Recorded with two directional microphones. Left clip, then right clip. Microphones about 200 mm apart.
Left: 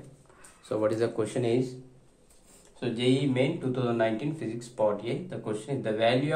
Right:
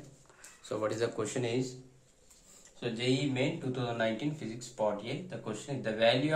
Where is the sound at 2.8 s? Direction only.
35° left (ahead or behind).